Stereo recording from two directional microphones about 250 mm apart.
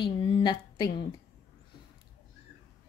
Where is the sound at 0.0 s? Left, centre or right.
Centre.